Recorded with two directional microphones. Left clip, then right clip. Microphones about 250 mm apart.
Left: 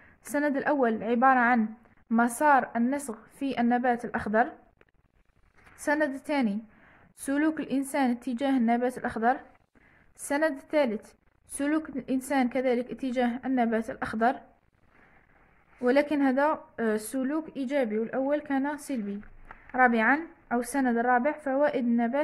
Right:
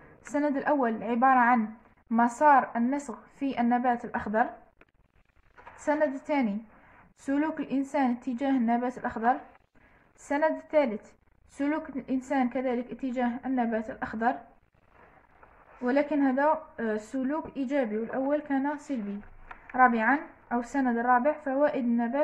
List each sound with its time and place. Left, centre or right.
0.3 s a woman's voice: left
5.9 s a woman's voice: left
15.8 s a woman's voice: left